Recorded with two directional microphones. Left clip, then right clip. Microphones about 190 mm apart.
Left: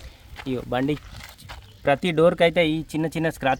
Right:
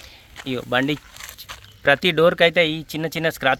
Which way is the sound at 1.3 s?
10° left (ahead or behind).